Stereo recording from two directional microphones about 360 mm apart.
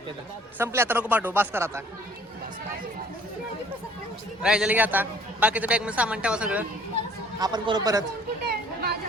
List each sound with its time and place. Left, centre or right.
0.6 s a man's voice: centre
4.4 s a man's voice: centre
8.4 s a sound: right